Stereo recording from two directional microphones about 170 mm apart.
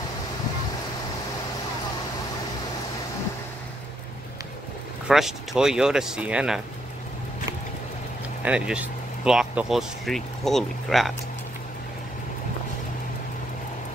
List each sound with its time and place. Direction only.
5.0 s speech: centre (ahead or behind)
8.4 s speech: 5° right (ahead or behind)